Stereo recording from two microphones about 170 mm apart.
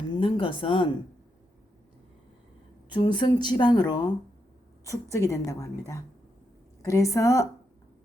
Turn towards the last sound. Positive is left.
turn(degrees=20)  # may be behind; listen again after turning